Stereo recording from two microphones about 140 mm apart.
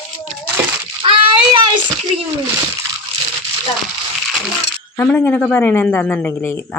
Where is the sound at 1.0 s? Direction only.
40° right (ahead or behind).